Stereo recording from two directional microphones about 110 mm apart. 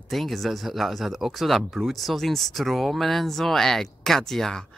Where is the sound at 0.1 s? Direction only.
Centre (ahead or behind).